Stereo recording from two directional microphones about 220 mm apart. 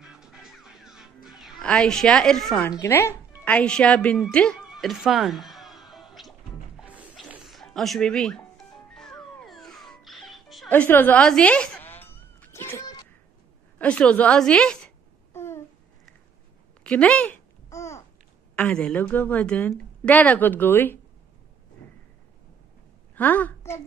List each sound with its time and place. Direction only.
0.0 s music: centre (ahead or behind)
1.4 s a woman's voice: 5° left (ahead or behind)
6.8 s a sound: 5° right (ahead or behind); by 13.1 s 15° left (ahead or behind)
13.7 s a woman's voice: 5° left (ahead or behind)
15.3 s babbling: 10° left (ahead or behind)
16.8 s a sound: 5° left (ahead or behind)
18.6 s a woman's voice: 5° left (ahead or behind)
23.1 s a woman's voice: 5° left (ahead or behind)